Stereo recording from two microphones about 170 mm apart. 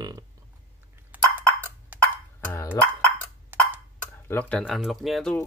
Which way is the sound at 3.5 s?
10° right (ahead or behind).